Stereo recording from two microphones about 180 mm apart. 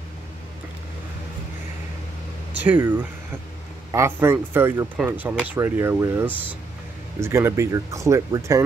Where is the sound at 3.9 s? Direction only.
15° right (ahead or behind).